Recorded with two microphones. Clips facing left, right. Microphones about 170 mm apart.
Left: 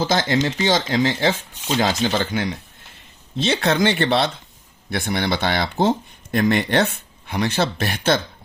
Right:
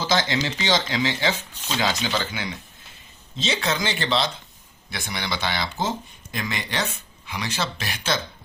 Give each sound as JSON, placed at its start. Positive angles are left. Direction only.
{"t": 0.0, "sound": "speech", "side_deg": 50}